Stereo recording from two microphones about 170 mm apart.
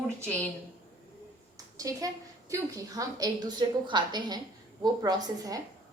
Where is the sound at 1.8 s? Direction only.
20° right (ahead or behind).